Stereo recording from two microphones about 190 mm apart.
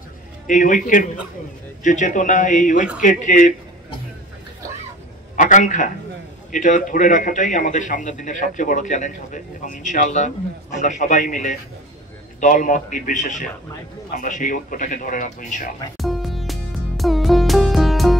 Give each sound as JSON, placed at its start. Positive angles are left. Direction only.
{"t": 0.5, "sound": "a man's voice", "side_deg": 45}
{"t": 5.3, "sound": "a man's voice", "side_deg": 40}
{"t": 16.0, "sound": "music", "side_deg": 0}